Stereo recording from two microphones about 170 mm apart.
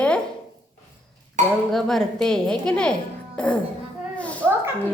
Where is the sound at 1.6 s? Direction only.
Centre (ahead or behind).